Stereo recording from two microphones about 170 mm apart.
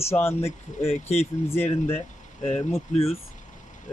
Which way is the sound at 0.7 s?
40° left (ahead or behind).